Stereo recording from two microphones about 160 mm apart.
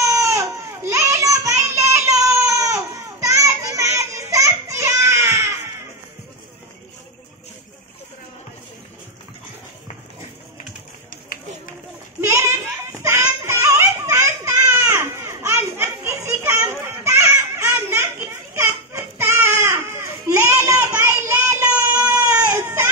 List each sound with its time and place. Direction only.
0.0 s baby cry: 20° right (ahead or behind)
12.2 s children playing: 15° right (ahead or behind)
13.0 s a sound: 15° right (ahead or behind)